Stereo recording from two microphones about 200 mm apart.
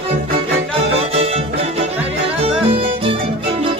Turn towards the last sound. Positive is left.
turn(degrees=-25)  # may be behind; listen again after turning